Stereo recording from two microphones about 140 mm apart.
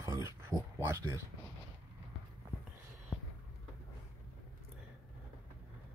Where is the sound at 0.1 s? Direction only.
20° right (ahead or behind).